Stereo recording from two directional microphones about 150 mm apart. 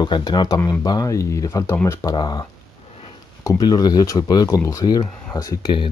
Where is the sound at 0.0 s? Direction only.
30° left (ahead or behind).